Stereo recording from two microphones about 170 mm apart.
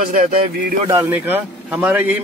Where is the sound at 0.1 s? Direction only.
55° right (ahead or behind).